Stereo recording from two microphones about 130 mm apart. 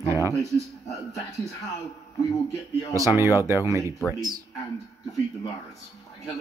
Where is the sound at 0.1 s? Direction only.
20° right (ahead or behind).